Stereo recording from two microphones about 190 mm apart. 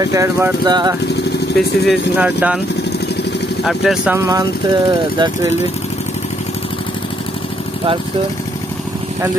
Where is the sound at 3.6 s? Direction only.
Centre (ahead or behind).